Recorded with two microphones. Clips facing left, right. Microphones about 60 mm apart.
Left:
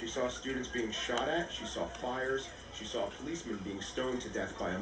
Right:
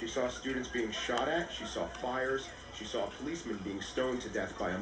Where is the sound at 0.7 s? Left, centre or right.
Centre.